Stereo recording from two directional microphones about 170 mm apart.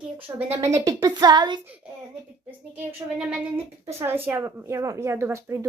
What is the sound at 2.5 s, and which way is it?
A woman's voice, 5° right (ahead or behind).